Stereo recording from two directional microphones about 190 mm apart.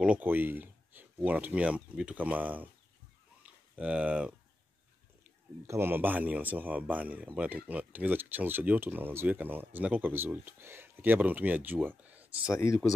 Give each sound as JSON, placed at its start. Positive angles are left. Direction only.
{"t": 0.0, "sound": "speech", "side_deg": -10}
{"t": 5.7, "sound": "speech", "side_deg": -10}
{"t": 12.4, "sound": "speech", "side_deg": 15}